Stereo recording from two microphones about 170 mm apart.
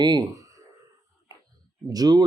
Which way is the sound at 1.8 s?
20° right (ahead or behind).